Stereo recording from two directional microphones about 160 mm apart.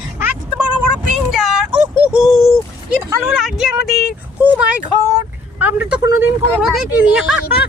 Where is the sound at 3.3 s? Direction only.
5° right (ahead or behind).